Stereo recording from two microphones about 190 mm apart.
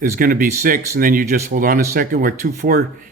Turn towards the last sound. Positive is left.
turn(degrees=-50)  # may be behind; listen again after turning